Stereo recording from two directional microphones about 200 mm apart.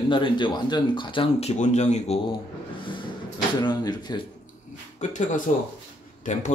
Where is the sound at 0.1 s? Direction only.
25° left (ahead or behind).